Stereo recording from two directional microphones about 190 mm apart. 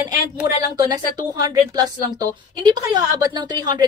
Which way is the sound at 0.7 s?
20° right (ahead or behind).